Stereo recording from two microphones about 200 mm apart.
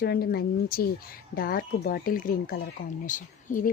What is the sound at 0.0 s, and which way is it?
Speech, 50° left (ahead or behind).